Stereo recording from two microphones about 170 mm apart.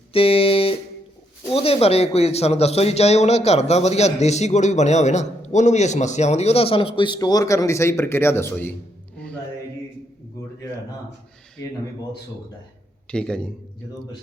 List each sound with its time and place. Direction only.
0.1 s music: 35° left (ahead or behind)
1.5 s speech: 35° left (ahead or behind); by 8.7 s 15° left (ahead or behind)
9.1 s music: 5° left (ahead or behind)
13.1 s a man's voice: 5° left (ahead or behind)